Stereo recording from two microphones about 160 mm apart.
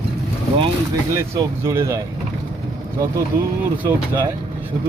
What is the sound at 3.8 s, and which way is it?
Speech, 10° right (ahead or behind).